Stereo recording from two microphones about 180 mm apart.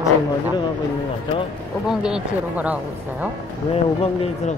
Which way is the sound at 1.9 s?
5° right (ahead or behind).